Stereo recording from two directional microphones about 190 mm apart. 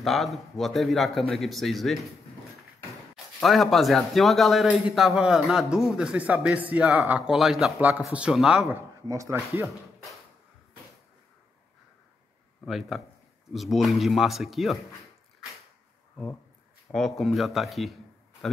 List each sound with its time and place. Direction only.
0.0 s a man's voice: centre (ahead or behind)
3.3 s a man's voice: centre (ahead or behind)
9.1 s speech: 15° right (ahead or behind)
12.6 s a man's voice: centre (ahead or behind)
16.9 s a man's voice: centre (ahead or behind)